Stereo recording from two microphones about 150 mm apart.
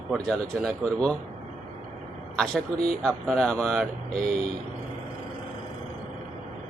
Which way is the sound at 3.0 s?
5° left (ahead or behind).